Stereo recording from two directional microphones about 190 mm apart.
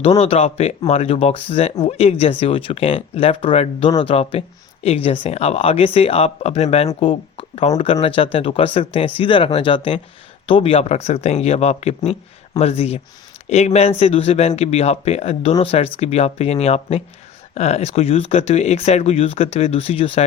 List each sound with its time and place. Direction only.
0.0 s speech: 30° left (ahead or behind)